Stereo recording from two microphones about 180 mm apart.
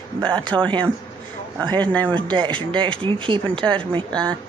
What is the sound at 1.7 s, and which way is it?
Speech, 5° left (ahead or behind).